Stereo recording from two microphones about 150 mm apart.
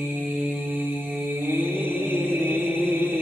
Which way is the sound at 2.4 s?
10° right (ahead or behind).